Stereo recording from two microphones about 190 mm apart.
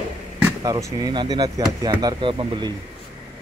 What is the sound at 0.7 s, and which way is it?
Speech, 20° right (ahead or behind).